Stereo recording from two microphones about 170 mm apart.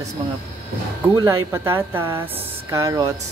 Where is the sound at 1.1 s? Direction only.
15° right (ahead or behind).